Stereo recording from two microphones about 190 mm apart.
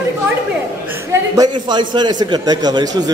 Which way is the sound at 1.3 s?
20° right (ahead or behind).